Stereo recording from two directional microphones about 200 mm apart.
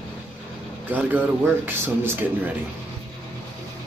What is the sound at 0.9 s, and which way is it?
Speech, 10° right (ahead or behind).